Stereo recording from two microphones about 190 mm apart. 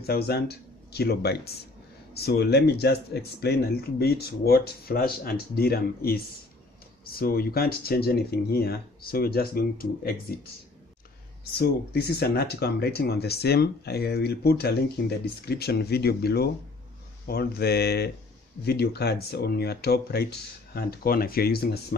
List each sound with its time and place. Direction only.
0.0 s speech: 55° left (ahead or behind)
11.5 s speech: 55° left (ahead or behind)